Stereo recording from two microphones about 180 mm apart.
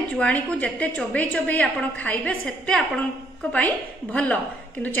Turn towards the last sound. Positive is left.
turn(degrees=10)  # may be behind; listen again after turning